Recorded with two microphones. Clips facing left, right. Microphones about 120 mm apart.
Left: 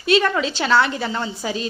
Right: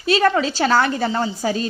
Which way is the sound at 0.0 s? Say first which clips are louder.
Right 1 dB; 35° right (ahead or behind).